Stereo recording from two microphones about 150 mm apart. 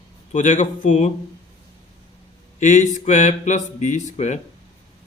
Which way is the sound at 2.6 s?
55° left (ahead or behind).